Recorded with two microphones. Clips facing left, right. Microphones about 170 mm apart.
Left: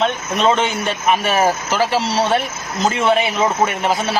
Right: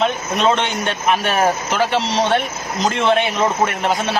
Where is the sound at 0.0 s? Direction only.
Centre (ahead or behind).